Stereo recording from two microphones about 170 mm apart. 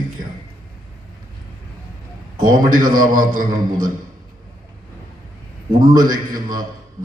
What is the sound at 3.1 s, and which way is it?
Speech, 55° right (ahead or behind).